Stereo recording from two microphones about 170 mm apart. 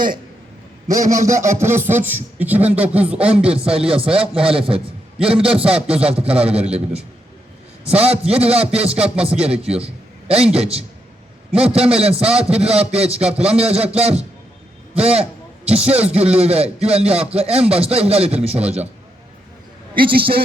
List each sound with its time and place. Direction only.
1.1 s speech: 20° right (ahead or behind)
3.8 s a man's voice: 35° right (ahead or behind)